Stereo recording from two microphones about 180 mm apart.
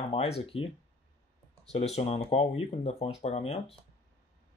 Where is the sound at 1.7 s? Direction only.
35° left (ahead or behind).